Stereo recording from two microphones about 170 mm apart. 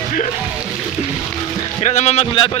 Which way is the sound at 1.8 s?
40° left (ahead or behind).